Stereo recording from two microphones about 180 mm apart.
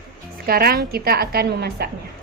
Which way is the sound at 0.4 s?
60° right (ahead or behind).